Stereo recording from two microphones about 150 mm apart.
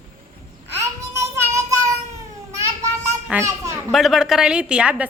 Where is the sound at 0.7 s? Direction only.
20° right (ahead or behind).